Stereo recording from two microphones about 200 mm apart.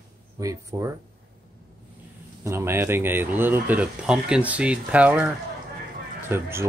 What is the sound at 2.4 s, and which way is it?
Speech, 10° right (ahead or behind).